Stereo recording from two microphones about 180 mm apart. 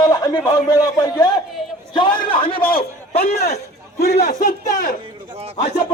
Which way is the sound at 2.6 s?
55° left (ahead or behind).